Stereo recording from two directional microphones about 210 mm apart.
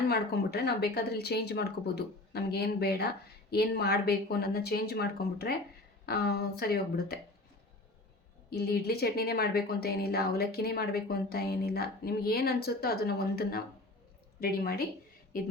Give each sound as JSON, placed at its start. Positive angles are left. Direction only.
{"t": 0.1, "sound": "speech", "side_deg": 50}
{"t": 8.4, "sound": "speech", "side_deg": 50}